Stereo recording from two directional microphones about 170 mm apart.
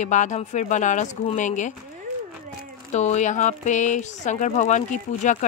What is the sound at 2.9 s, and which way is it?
Speech, 45° left (ahead or behind).